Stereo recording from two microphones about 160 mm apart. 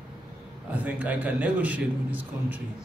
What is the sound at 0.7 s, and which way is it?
A man's voice, 10° right (ahead or behind).